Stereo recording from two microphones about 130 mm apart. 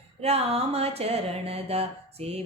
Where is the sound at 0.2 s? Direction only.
50° right (ahead or behind).